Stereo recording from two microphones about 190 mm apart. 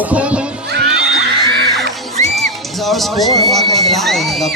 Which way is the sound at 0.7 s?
60° right (ahead or behind).